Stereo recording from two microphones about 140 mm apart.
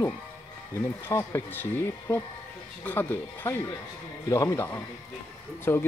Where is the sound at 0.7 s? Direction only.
20° left (ahead or behind).